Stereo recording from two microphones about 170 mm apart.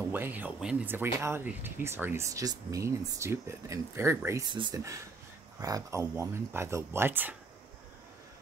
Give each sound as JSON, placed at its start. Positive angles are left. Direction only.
{"t": 0.1, "sound": "speech", "side_deg": -10}
{"t": 4.5, "sound": "speech", "side_deg": -25}